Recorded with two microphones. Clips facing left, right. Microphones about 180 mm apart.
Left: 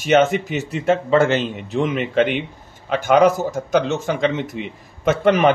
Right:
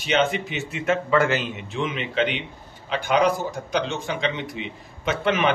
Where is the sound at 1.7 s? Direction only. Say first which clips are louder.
Left 7 dB; 45° left (ahead or behind).